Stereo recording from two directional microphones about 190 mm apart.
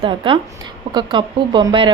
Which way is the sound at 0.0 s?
25° right (ahead or behind).